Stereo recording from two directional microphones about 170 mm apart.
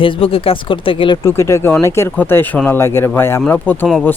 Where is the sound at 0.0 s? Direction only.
30° left (ahead or behind).